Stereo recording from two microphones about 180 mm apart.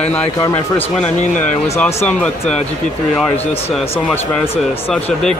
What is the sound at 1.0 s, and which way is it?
Speech, 40° left (ahead or behind).